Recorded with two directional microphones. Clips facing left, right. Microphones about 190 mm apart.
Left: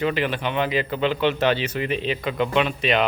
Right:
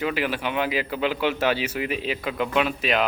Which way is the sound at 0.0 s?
5° right (ahead or behind).